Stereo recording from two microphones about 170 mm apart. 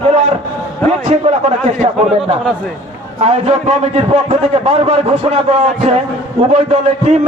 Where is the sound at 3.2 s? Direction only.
40° right (ahead or behind).